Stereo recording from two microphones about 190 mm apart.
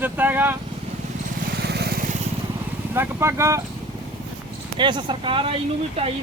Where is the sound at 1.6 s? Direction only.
60° right (ahead or behind).